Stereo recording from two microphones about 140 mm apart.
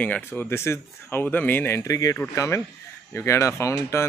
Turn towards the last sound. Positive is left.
turn(degrees=20)  # may be behind; listen again after turning